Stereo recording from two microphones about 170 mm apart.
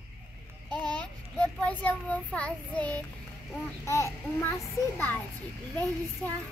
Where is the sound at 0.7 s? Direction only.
5° left (ahead or behind).